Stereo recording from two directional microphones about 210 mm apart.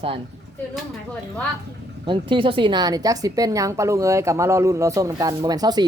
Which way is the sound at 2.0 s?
25° right (ahead or behind).